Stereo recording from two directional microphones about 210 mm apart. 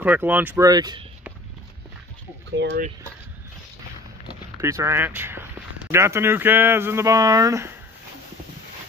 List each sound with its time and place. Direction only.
0.0 s speech: 10° right (ahead or behind)
2.5 s speech: 55° right (ahead or behind)
4.6 s speech: 15° right (ahead or behind)